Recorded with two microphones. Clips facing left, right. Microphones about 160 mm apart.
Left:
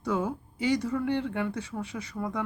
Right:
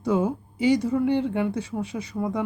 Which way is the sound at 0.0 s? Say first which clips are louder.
Right 6 dB; 20° right (ahead or behind).